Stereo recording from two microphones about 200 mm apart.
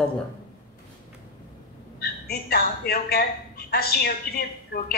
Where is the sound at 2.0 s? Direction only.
50° left (ahead or behind).